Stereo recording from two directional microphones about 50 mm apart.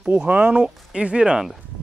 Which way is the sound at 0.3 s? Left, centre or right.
Right.